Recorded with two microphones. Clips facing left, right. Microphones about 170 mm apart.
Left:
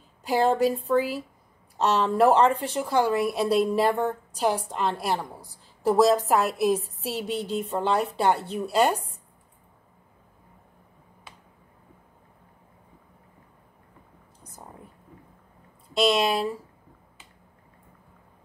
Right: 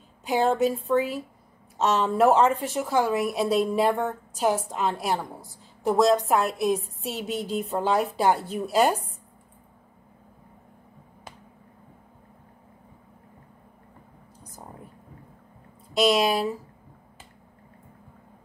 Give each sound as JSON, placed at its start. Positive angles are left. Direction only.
{"t": 0.2, "sound": "a woman's voice", "side_deg": 0}
{"t": 8.4, "sound": "a woman's voice", "side_deg": 25}
{"t": 16.0, "sound": "a woman's voice", "side_deg": -5}